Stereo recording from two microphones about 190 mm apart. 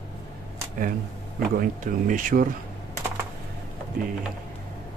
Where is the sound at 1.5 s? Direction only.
45° right (ahead or behind).